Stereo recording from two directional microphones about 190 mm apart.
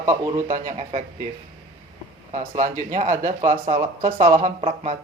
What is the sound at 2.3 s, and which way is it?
Speech, 40° right (ahead or behind).